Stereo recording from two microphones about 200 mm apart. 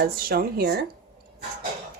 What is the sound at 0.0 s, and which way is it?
Speech, 50° right (ahead or behind).